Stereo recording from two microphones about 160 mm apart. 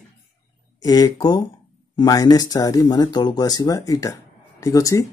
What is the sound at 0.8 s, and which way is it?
Speech, 25° left (ahead or behind).